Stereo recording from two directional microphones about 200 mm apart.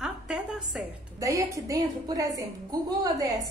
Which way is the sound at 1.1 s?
15° right (ahead or behind).